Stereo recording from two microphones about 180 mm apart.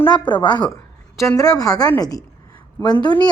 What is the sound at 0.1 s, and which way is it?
Speech, 25° left (ahead or behind).